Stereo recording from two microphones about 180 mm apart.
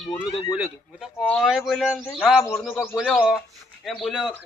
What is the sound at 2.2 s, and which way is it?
Speech, 5° right (ahead or behind).